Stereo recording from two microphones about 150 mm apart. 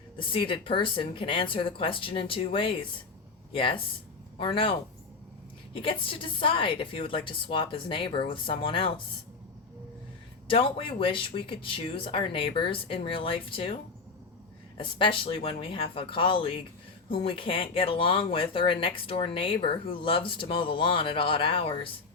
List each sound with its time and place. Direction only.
0.2 s speech: 35° left (ahead or behind)
5.7 s speech: 35° left (ahead or behind)
10.5 s speech: 35° left (ahead or behind)
14.8 s speech: 35° left (ahead or behind)